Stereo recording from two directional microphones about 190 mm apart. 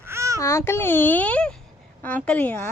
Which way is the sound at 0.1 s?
15° right (ahead or behind).